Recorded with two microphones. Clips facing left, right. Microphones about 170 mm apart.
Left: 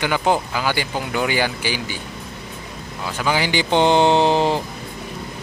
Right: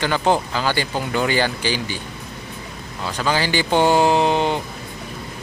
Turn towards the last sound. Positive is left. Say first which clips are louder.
# left 1 dB
turn(degrees=30)  # may be behind; listen again after turning